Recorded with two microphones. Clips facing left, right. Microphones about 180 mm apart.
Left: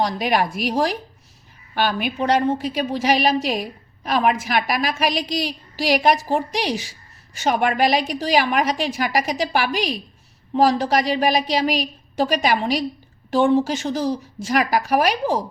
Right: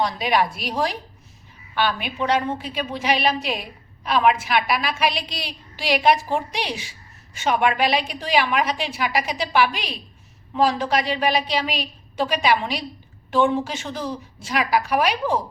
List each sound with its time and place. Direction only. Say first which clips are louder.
0.0 s a woman's voice: left 1 dB; 45° left (ahead or behind)